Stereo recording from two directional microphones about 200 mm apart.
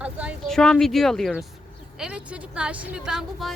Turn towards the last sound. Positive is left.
turn(degrees=0)  # may be behind; listen again after turning